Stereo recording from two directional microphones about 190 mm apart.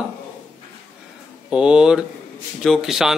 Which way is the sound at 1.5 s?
5° right (ahead or behind).